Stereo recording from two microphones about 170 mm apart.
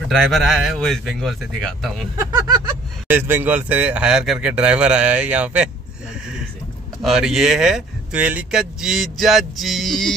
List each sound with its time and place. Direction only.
0.1 s speech: centre (ahead or behind)
2.1 s speech: 20° right (ahead or behind)
7.0 s speech: centre (ahead or behind)